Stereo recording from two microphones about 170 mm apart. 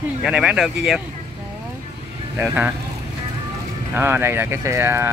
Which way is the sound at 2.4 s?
10° right (ahead or behind).